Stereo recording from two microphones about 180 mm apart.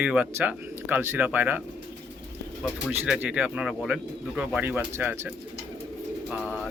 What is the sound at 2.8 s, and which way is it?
Speech, centre (ahead or behind).